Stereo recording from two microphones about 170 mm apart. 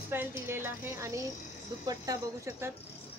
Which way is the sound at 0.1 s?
15° right (ahead or behind).